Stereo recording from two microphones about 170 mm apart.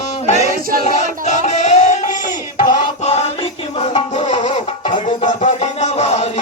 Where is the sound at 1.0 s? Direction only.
45° left (ahead or behind).